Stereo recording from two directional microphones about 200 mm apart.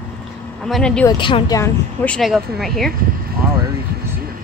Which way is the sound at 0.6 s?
5° left (ahead or behind).